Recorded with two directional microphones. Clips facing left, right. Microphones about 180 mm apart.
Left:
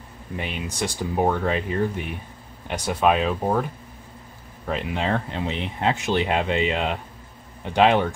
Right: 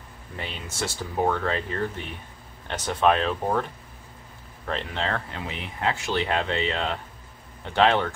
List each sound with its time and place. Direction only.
0.4 s speech: 15° left (ahead or behind)
4.6 s speech: 10° left (ahead or behind)